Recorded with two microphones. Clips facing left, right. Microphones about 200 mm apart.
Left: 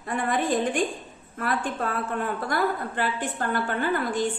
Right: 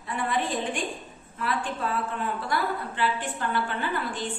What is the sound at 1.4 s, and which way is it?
A woman's voice, 50° left (ahead or behind).